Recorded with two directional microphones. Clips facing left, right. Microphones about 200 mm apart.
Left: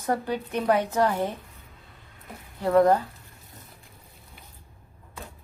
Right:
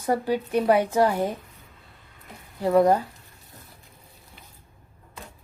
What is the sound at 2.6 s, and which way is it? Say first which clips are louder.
Speech: right 1 dB; 10° right (ahead or behind).